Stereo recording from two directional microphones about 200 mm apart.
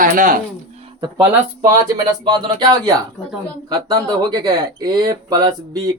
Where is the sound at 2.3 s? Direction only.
20° right (ahead or behind).